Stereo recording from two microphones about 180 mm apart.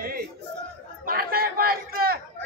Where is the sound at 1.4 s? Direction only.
55° right (ahead or behind).